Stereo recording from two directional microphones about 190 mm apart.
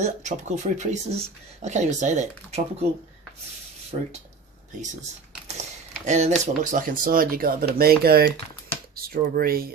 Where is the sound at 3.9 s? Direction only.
35° right (ahead or behind).